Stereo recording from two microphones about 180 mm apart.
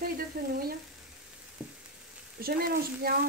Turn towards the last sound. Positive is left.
turn(degrees=-55)  # may be behind; listen again after turning